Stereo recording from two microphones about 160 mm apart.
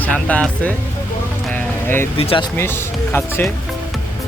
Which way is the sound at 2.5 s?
15° left (ahead or behind).